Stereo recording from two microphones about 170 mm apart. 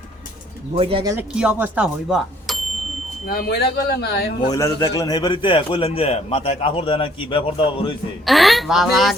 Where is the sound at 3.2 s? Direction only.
65° left (ahead or behind).